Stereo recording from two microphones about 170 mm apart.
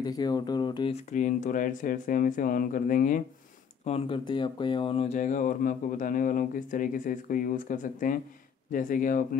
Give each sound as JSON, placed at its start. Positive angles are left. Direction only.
{"t": 0.0, "sound": "speech", "side_deg": 25}
{"t": 1.1, "sound": "speech", "side_deg": 45}
{"t": 3.8, "sound": "speech", "side_deg": 35}